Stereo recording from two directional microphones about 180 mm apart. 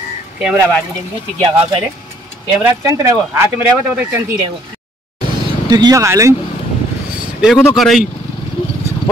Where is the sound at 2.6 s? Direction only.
15° right (ahead or behind).